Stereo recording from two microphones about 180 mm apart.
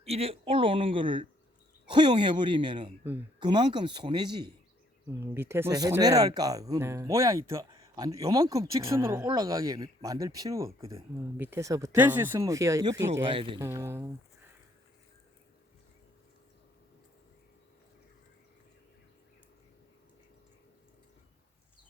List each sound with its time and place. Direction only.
0.0 s speech: 35° right (ahead or behind)
5.0 s speech: 15° right (ahead or behind)
13.3 s speech: 30° right (ahead or behind)
13.6 s speech: 15° right (ahead or behind)